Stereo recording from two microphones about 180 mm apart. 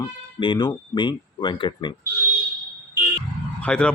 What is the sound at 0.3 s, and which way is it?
Speech, 25° left (ahead or behind).